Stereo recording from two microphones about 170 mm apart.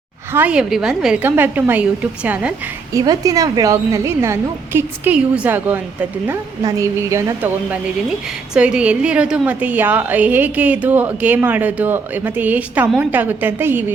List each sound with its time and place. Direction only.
0.3 s a woman's voice: 5° right (ahead or behind)
2.9 s a woman's voice: 20° right (ahead or behind)